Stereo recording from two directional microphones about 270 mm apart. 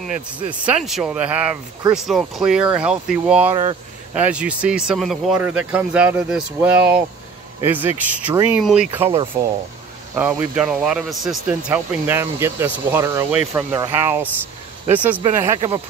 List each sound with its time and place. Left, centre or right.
0.7 s speech: centre
9.0 s speech: right
10.1 s speech: centre
15.2 s speech: centre